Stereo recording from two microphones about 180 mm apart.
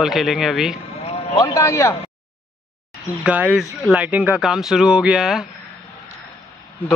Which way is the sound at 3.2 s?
5° right (ahead or behind).